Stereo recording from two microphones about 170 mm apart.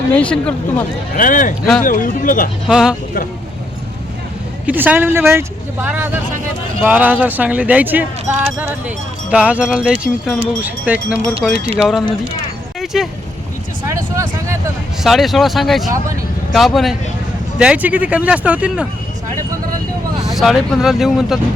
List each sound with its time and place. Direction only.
0.1 s speech: 5° left (ahead or behind)
1.1 s speech: 50° left (ahead or behind)
2.6 s speech: 5° right (ahead or behind)
4.6 s speech: 10° right (ahead or behind)
9.3 s speech: 5° right (ahead or behind)
11.4 s speech: centre (ahead or behind)
12.8 s vehicle: centre (ahead or behind)
13.8 s vehicle: 15° right (ahead or behind)
15.0 s speech: centre (ahead or behind)
20.3 s speech: centre (ahead or behind)